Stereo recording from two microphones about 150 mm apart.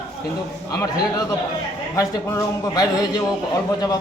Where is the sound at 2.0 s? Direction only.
25° left (ahead or behind).